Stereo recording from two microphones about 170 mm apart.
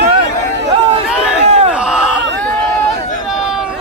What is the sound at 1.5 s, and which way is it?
Battle cry, 35° right (ahead or behind).